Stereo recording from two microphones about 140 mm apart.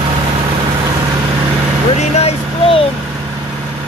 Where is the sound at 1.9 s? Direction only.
50° left (ahead or behind).